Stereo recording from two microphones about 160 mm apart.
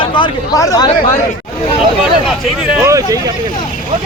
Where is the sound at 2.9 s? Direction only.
20° right (ahead or behind).